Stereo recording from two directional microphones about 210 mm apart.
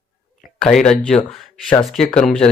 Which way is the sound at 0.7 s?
5° left (ahead or behind).